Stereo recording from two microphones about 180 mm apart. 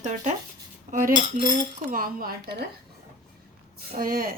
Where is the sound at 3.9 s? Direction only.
55° right (ahead or behind).